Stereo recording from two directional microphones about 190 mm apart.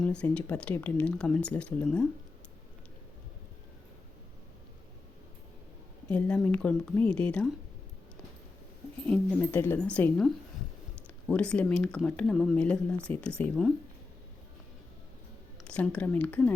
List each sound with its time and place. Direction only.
0.0 s speech: 5° left (ahead or behind)
6.1 s speech: 5° left (ahead or behind)
9.0 s speech: 10° left (ahead or behind)
15.6 s speech: 5° left (ahead or behind)